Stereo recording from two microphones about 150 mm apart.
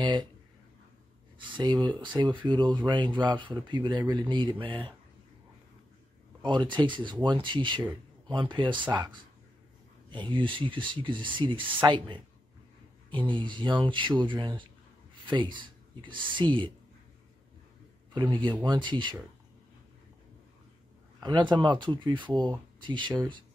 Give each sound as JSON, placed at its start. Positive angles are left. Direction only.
{"t": 0.0, "sound": "speech", "side_deg": -30}
{"t": 1.4, "sound": "speech", "side_deg": -30}
{"t": 6.4, "sound": "speech", "side_deg": -30}
{"t": 18.3, "sound": "speech", "side_deg": -30}
{"t": 21.2, "sound": "speech", "side_deg": -30}